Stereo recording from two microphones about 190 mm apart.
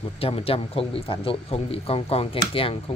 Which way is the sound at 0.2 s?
30° left (ahead or behind).